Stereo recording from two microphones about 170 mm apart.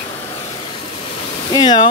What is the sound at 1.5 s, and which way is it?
Speech, 25° left (ahead or behind).